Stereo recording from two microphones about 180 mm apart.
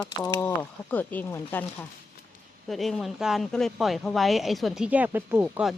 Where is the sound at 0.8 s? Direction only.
10° left (ahead or behind).